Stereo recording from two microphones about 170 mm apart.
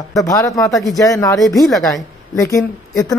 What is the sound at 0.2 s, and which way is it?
A woman's voice, 20° left (ahead or behind).